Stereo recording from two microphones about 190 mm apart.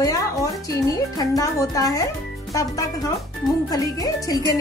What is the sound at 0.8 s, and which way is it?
A woman's voice, 20° left (ahead or behind).